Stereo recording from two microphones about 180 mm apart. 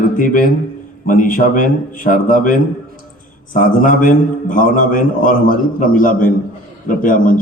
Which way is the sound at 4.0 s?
50° left (ahead or behind).